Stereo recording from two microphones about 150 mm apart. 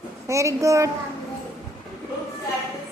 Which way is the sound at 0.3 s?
20° right (ahead or behind).